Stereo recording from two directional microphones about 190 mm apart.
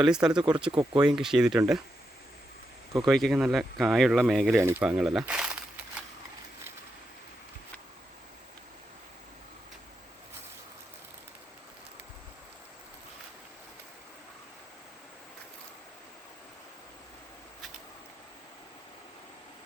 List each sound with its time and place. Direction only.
0.0 s speech: 5° right (ahead or behind)
0.7 s speech: 20° right (ahead or behind)
1.0 s speech: 5° right (ahead or behind)
3.0 s speech: centre (ahead or behind)
4.5 s speech: 15° right (ahead or behind)
4.9 s speech: 5° right (ahead or behind)